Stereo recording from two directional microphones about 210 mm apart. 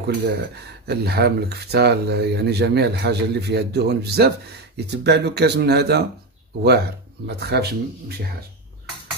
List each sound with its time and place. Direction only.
0.0 s speech: 55° right (ahead or behind)
7.2 s speech: 50° right (ahead or behind)